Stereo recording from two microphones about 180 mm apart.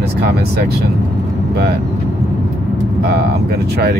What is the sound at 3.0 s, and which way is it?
Speech, 60° right (ahead or behind).